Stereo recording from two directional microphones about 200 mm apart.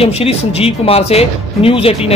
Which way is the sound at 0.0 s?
30° left (ahead or behind).